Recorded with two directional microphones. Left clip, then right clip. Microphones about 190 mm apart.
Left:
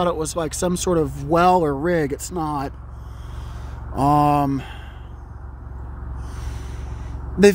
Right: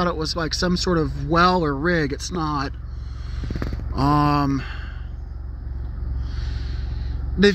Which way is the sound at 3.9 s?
20° left (ahead or behind).